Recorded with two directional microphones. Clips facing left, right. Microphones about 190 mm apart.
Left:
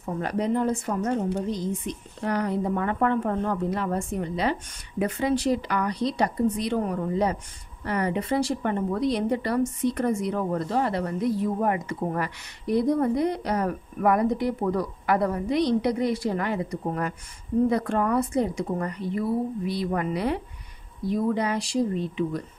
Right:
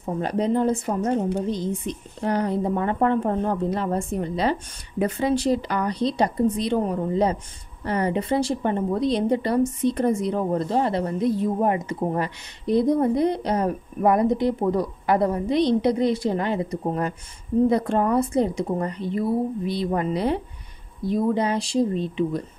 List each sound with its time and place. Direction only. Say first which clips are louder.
0.0 s a woman's voice: right 3 dB; 25° right (ahead or behind)